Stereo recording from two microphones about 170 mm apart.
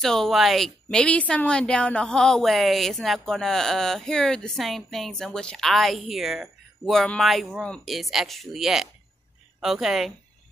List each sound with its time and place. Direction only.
0.0 s a woman's voice: centre (ahead or behind)